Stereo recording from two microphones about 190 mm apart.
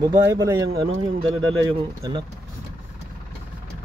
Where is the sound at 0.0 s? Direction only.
20° right (ahead or behind).